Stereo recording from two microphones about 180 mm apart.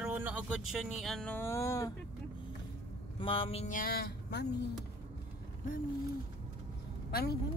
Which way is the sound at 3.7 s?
55° left (ahead or behind).